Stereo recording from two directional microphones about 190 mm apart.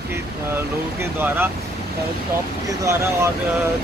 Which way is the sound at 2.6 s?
15° right (ahead or behind).